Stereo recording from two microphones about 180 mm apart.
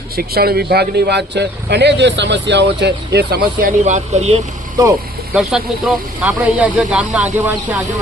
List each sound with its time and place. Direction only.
0.2 s speech: 60° right (ahead or behind)
3.8 s speech: 40° right (ahead or behind)
5.3 s speech: centre (ahead or behind)